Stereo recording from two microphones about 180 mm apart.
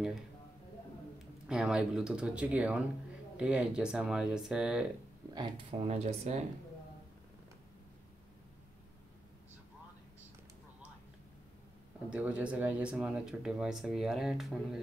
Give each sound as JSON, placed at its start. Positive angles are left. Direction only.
{"t": 1.5, "sound": "speech", "side_deg": -5}
{"t": 5.3, "sound": "speech", "side_deg": -25}
{"t": 5.9, "sound": "speech", "side_deg": -35}
{"t": 12.1, "sound": "speech", "side_deg": -5}